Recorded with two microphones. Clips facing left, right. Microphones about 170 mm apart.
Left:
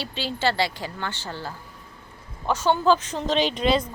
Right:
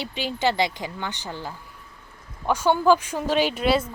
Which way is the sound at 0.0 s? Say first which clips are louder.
Right 1 dB; 15° right (ahead or behind).